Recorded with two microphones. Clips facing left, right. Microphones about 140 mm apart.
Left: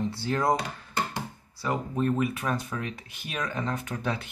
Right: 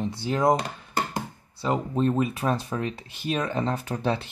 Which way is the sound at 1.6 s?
25° right (ahead or behind).